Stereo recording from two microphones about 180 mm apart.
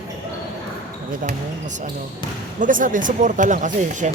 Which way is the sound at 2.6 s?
45° right (ahead or behind).